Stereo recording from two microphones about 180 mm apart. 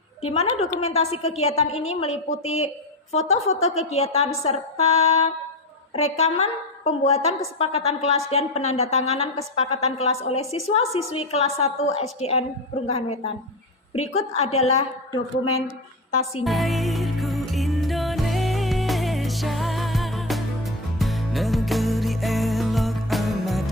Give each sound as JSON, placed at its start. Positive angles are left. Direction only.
{"t": 0.2, "sound": "a woman's voice", "side_deg": 35}
{"t": 16.4, "sound": "music", "side_deg": 0}